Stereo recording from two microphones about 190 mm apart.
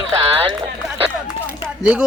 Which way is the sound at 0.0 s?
25° right (ahead or behind).